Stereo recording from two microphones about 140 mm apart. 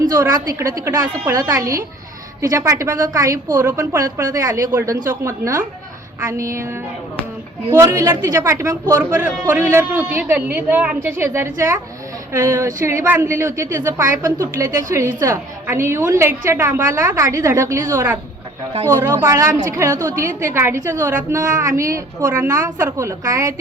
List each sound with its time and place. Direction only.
0.0 s a woman's voice: 25° right (ahead or behind)
21.8 s a woman's voice: 20° right (ahead or behind)